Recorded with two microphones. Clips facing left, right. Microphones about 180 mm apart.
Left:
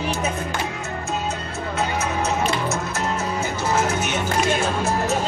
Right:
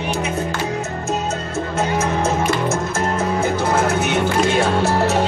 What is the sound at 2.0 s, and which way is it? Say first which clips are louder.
Music: right 4 dB; 50° right (ahead or behind).